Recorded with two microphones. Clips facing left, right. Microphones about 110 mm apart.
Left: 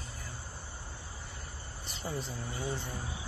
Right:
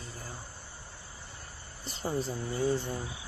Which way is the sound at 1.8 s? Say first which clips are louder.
Right 6 dB; 35° right (ahead or behind).